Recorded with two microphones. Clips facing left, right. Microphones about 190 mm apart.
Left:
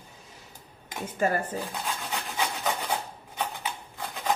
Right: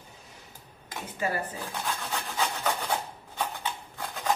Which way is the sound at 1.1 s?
45° left (ahead or behind).